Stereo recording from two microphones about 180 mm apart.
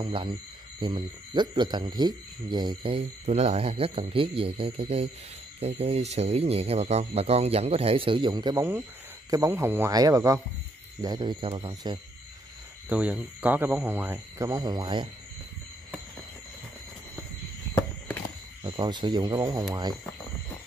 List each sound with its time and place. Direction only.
0.0 s speech: 30° right (ahead or behind)
12.8 s speech: 10° right (ahead or behind); by 15.0 s 25° right (ahead or behind)
17.7 s a sound: 10° left (ahead or behind)
18.6 s speech: 25° right (ahead or behind)